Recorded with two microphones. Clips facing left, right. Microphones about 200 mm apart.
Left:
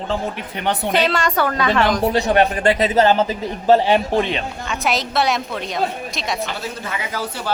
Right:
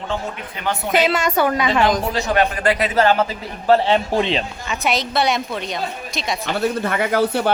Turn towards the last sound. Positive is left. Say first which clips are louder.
# right 9 dB
turn(degrees=-60)  # may be behind; listen again after turning